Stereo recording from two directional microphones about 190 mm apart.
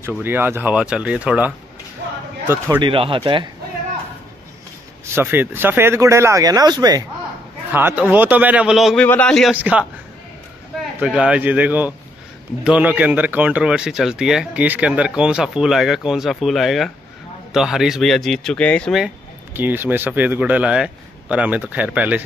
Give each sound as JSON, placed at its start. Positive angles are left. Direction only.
{"t": 0.0, "sound": "speech", "side_deg": -10}
{"t": 2.8, "sound": "speech", "side_deg": -25}
{"t": 5.0, "sound": "speech", "side_deg": -10}
{"t": 9.6, "sound": "speech", "side_deg": -10}
{"t": 11.0, "sound": "speech", "side_deg": -5}